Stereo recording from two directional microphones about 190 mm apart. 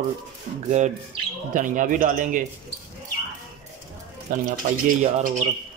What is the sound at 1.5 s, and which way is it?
Speech, 45° right (ahead or behind).